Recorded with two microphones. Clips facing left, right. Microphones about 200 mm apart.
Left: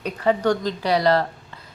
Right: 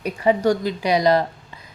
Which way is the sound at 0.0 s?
10° right (ahead or behind).